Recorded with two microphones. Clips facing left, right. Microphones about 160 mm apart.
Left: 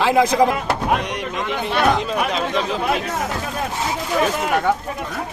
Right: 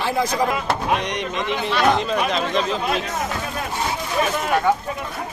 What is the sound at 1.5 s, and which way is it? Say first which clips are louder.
Speech: left 1 dB; 50° left (ahead or behind).